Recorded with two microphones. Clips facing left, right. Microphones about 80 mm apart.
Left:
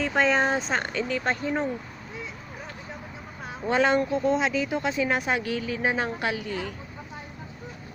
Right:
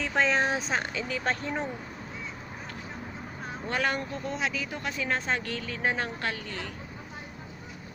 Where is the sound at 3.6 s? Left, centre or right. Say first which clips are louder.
Left 8 dB; left.